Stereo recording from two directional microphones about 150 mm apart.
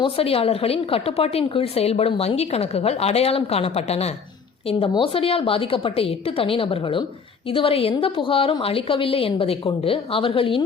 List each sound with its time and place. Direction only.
0.0 s a woman's voice: 40° left (ahead or behind)